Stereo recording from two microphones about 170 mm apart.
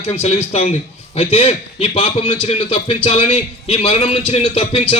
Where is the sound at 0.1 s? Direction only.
35° left (ahead or behind).